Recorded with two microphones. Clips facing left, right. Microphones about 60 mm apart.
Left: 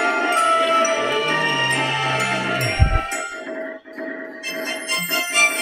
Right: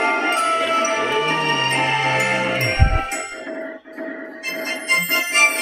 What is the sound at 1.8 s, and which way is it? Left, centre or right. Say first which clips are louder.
Music: right 2 dB; centre.